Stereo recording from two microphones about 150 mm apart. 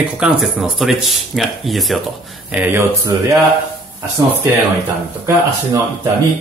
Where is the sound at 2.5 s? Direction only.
10° right (ahead or behind).